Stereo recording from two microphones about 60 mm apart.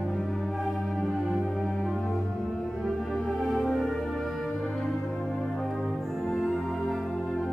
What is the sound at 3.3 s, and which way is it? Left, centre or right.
Music, centre.